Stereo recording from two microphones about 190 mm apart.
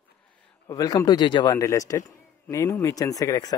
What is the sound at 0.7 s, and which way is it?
A man's voice, 20° left (ahead or behind).